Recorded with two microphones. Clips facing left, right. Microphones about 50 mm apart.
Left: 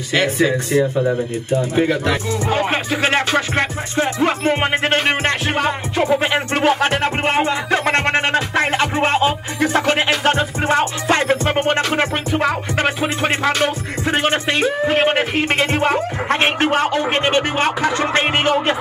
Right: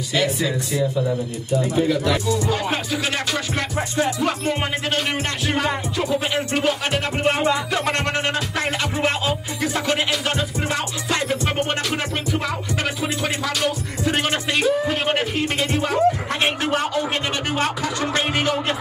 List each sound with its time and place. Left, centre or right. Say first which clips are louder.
0.1 s music: left 5 dB; left